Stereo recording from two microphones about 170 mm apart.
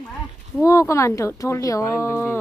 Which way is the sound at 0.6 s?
20° left (ahead or behind).